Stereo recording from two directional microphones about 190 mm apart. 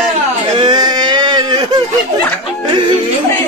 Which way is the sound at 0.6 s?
20° right (ahead or behind).